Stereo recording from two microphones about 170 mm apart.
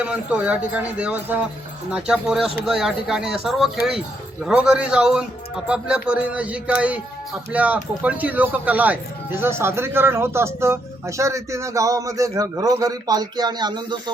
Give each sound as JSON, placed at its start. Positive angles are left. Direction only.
{"t": 0.0, "sound": "a man's voice", "side_deg": -5}